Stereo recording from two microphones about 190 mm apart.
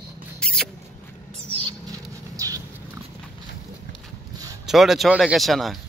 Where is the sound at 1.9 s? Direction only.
15° right (ahead or behind).